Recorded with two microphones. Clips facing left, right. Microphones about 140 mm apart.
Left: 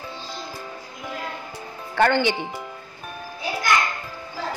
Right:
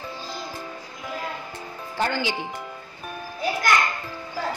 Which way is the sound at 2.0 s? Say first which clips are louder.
Left 7 dB; 65° left (ahead or behind).